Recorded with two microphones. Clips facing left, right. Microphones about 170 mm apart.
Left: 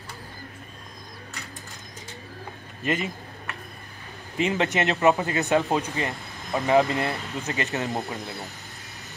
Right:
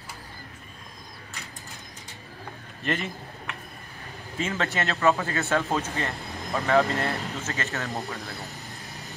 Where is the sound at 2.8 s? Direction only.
5° left (ahead or behind).